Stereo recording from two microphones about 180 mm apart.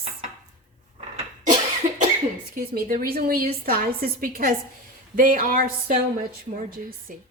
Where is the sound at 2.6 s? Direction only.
55° right (ahead or behind).